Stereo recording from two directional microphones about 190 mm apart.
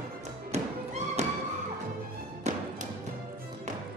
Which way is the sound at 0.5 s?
35° right (ahead or behind).